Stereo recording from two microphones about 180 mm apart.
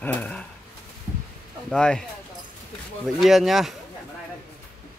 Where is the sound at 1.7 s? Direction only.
5° left (ahead or behind).